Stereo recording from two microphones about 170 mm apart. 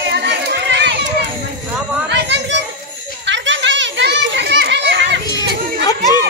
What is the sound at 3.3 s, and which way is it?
Children playing, 90° right.